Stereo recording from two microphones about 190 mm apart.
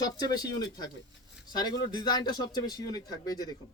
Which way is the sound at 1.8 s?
20° left (ahead or behind).